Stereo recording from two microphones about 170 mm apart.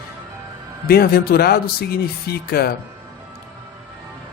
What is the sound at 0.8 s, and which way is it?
Speech, 65° left (ahead or behind).